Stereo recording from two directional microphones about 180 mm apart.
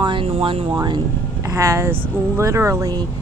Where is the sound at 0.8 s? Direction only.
20° right (ahead or behind).